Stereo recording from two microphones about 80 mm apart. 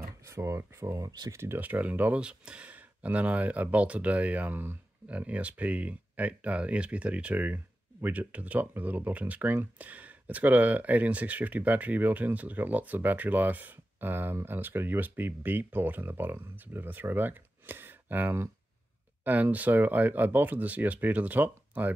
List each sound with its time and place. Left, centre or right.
0.3 s speech: right
1.6 s speech: right